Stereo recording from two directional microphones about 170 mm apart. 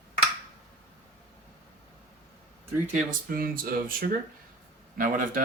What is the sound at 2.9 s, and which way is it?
Speech, 55° right (ahead or behind).